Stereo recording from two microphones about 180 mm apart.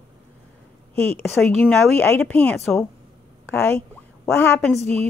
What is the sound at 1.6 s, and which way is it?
Speech, 10° left (ahead or behind).